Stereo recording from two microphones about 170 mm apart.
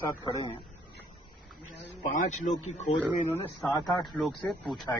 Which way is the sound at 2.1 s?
45° left (ahead or behind).